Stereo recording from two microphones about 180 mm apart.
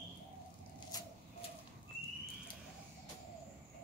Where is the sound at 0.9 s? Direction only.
20° left (ahead or behind).